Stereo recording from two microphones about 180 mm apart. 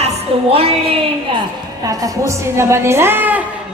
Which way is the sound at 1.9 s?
20° right (ahead or behind).